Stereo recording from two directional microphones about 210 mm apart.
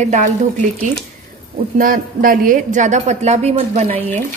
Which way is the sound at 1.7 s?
40° right (ahead or behind).